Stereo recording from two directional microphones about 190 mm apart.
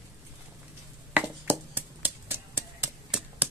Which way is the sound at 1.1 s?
10° right (ahead or behind).